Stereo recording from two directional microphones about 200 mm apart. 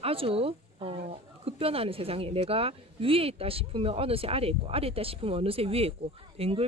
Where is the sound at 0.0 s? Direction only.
30° right (ahead or behind).